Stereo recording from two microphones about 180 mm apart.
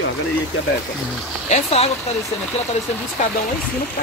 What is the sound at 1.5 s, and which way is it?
Speech, 35° left (ahead or behind).